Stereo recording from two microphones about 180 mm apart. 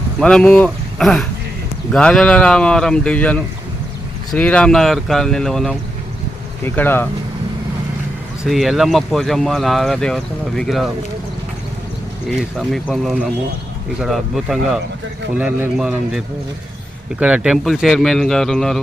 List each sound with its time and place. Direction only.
0.2 s speech: 5° left (ahead or behind)
8.4 s speech: centre (ahead or behind)
12.4 s speech: centre (ahead or behind)